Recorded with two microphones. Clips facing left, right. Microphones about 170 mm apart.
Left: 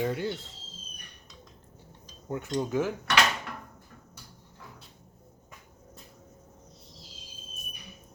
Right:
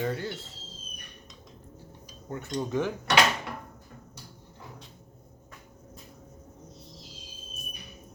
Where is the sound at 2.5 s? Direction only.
5° left (ahead or behind).